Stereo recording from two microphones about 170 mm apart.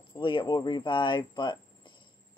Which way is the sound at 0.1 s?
30° left (ahead or behind).